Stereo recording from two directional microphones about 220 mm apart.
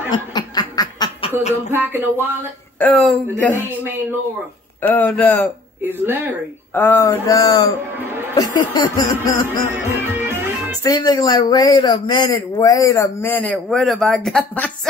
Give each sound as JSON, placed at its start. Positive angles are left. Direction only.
{"t": 0.1, "sound": "snicker", "side_deg": 20}
{"t": 1.7, "sound": "speech", "side_deg": -10}
{"t": 2.8, "sound": "speech", "side_deg": 5}
{"t": 3.5, "sound": "speech", "side_deg": -10}
{"t": 4.8, "sound": "speech", "side_deg": 10}
{"t": 5.9, "sound": "speech", "side_deg": -10}
{"t": 6.7, "sound": "speech", "side_deg": 10}
{"t": 8.0, "sound": "a sound", "side_deg": -10}
{"t": 8.7, "sound": "speech", "side_deg": 20}
{"t": 9.8, "sound": "music", "side_deg": -10}
{"t": 10.8, "sound": "speech", "side_deg": 15}